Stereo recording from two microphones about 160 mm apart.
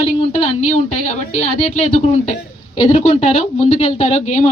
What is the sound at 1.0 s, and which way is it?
Speech, 40° left (ahead or behind).